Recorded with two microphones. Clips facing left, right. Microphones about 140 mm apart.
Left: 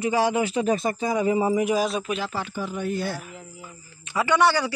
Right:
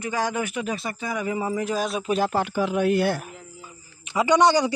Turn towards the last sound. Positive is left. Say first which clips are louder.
# right 2 dB
turn(degrees=-20)  # may be behind; listen again after turning